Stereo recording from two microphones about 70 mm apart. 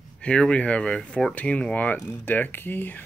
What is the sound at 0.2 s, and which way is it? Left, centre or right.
Speech, centre.